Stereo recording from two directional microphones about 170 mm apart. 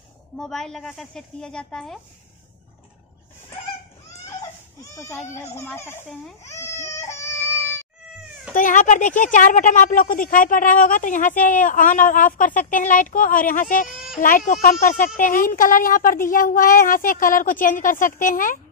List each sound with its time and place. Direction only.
0.4 s a woman's voice: centre (ahead or behind)
4.3 s baby cry: 20° left (ahead or behind)
5.5 s speech: 15° left (ahead or behind)
6.4 s baby cry: 15° left (ahead or behind)
8.5 s speech: 50° left (ahead or behind)